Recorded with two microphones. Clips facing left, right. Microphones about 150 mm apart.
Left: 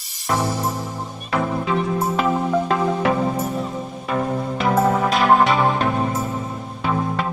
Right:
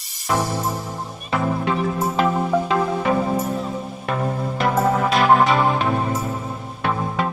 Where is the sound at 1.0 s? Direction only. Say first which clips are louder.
Right 1 dB; centre (ahead or behind).